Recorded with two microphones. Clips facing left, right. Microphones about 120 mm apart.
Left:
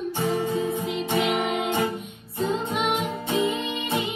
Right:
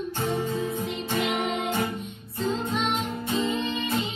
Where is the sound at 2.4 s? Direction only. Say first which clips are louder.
Left 1 dB; 60° left (ahead or behind).